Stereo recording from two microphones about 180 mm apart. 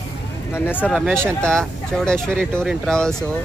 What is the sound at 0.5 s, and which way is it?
Speech, 10° left (ahead or behind).